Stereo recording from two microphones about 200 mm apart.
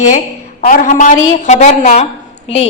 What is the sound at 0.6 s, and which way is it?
A woman's voice, 40° left (ahead or behind).